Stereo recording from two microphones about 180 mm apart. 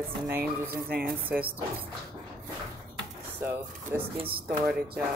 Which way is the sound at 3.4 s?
10° right (ahead or behind).